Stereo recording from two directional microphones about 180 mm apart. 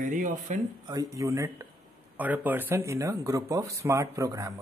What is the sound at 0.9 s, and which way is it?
Speech, 20° right (ahead or behind).